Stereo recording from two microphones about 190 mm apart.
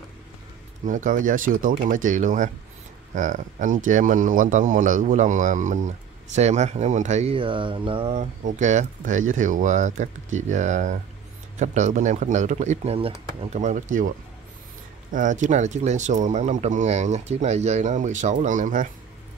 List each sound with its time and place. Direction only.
0.8 s speech: 40° right (ahead or behind)
15.1 s speech: 40° right (ahead or behind)